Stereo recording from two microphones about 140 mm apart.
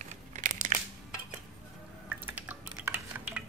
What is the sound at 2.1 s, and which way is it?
Dishes, 10° right (ahead or behind).